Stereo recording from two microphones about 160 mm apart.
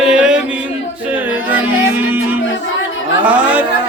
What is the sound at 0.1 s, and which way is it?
Music, 5° right (ahead or behind).